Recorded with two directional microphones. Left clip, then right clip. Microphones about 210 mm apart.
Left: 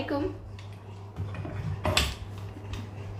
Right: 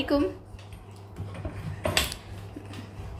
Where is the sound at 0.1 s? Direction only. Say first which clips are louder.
Right 6 dB; 40° right (ahead or behind).